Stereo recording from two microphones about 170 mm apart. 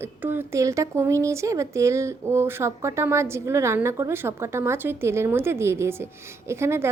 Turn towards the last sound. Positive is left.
turn(degrees=-15)  # may be behind; listen again after turning